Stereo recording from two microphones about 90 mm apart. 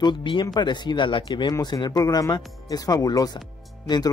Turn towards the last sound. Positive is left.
turn(degrees=55)  # may be behind; listen again after turning